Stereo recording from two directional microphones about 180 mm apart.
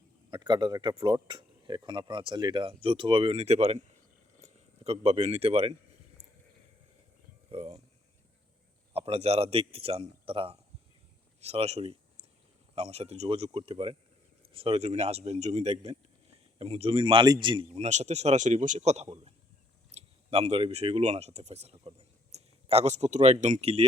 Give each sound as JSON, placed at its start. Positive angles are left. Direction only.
{"t": 0.3, "sound": "speech", "side_deg": -25}
{"t": 7.5, "sound": "a sound", "side_deg": -35}
{"t": 8.9, "sound": "a man's voice", "side_deg": -35}
{"t": 17.8, "sound": "a man's voice", "side_deg": -40}